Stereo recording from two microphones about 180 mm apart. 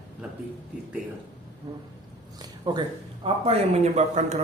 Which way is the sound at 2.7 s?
25° right (ahead or behind).